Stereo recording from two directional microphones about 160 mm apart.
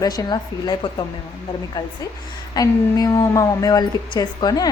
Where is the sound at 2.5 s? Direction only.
25° left (ahead or behind).